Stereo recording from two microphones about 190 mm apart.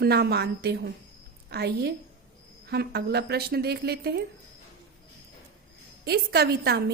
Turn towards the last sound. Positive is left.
turn(degrees=-60)  # may be behind; listen again after turning